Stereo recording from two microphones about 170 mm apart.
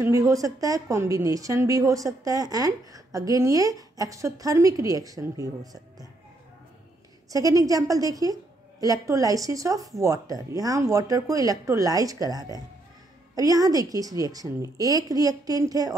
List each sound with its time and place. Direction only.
0.0 s a woman's voice: 20° right (ahead or behind)
7.2 s a woman's voice: 20° right (ahead or behind)